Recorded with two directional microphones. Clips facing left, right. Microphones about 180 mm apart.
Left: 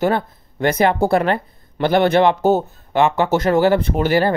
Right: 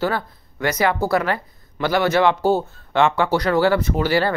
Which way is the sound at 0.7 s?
30° left (ahead or behind).